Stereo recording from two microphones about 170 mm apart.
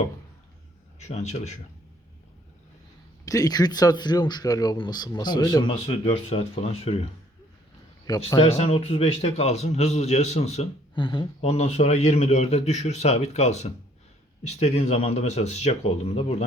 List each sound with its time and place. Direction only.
0.9 s a man's voice: 40° left (ahead or behind)
3.2 s speech: 20° left (ahead or behind)
5.8 s a man's voice: 35° left (ahead or behind)
8.0 s a man's voice: 20° left (ahead or behind)
8.4 s a man's voice: 35° left (ahead or behind)